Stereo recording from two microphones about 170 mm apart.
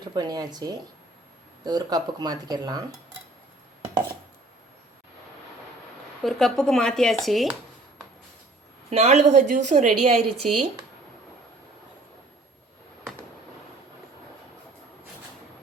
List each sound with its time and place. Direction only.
0.0 s speech: 25° right (ahead or behind)
6.2 s speech: 5° left (ahead or behind)
8.9 s a woman's voice: 40° right (ahead or behind)